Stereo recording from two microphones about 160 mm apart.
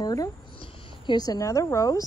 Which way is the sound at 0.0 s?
25° left (ahead or behind).